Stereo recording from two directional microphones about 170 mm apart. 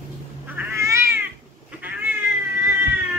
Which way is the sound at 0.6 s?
15° right (ahead or behind).